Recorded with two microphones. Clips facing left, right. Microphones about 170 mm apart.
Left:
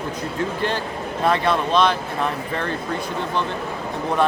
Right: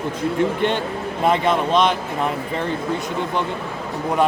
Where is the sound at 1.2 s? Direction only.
20° right (ahead or behind).